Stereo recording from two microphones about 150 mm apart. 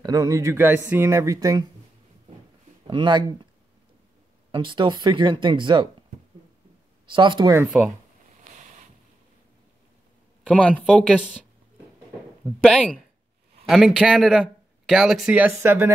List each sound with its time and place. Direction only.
0.0 s speech: 25° right (ahead or behind)
2.9 s speech: 30° right (ahead or behind)
4.5 s speech: 30° right (ahead or behind)
7.1 s speech: 30° right (ahead or behind)
8.5 s a sound: 55° right (ahead or behind)
10.5 s speech: 10° left (ahead or behind)
12.6 s speech: 5° left (ahead or behind); by 15.9 s 15° right (ahead or behind)